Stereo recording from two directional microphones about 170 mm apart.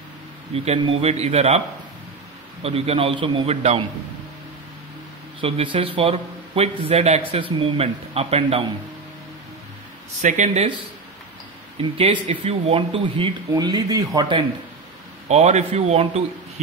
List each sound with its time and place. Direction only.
0.7 s speech: 40° right (ahead or behind)
2.6 s speech: 35° right (ahead or behind)
5.4 s speech: 35° right (ahead or behind)
10.2 s speech: 45° right (ahead or behind)
11.8 s speech: 30° right (ahead or behind)
15.2 s speech: 40° right (ahead or behind)